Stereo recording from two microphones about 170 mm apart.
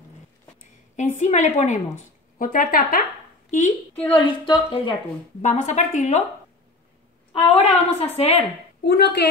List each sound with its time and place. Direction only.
0.9 s a woman's voice: 45° left (ahead or behind)
2.3 s speech: 55° left (ahead or behind)
4.1 s speech: 25° left (ahead or behind)
5.4 s a woman's voice: 45° left (ahead or behind)
7.3 s a woman's voice: 35° left (ahead or behind)
8.8 s a woman's voice: 70° left (ahead or behind)